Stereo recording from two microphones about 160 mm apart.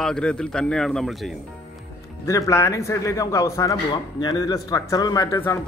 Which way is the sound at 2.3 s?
20° left (ahead or behind).